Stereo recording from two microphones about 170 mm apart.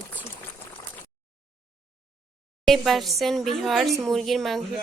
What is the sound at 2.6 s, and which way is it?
Speech, centre (ahead or behind).